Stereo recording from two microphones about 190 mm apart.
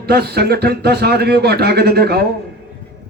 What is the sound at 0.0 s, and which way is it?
A man's voice, 55° right (ahead or behind).